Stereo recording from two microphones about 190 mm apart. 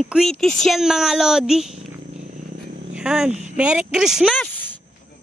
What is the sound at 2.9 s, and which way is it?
Speech, 5° right (ahead or behind).